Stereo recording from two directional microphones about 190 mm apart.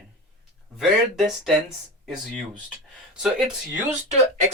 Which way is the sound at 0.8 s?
Centre (ahead or behind).